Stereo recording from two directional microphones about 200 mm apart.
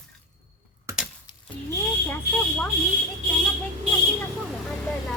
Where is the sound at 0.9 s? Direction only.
15° right (ahead or behind).